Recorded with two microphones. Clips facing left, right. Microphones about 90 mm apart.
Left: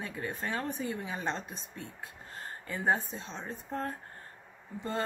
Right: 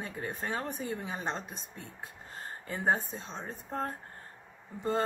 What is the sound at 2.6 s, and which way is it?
A woman's voice, 30° right (ahead or behind).